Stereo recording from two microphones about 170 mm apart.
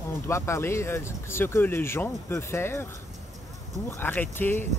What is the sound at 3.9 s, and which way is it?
Speech, 10° left (ahead or behind).